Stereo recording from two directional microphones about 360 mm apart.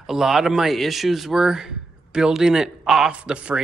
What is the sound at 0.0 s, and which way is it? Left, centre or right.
Speech, centre.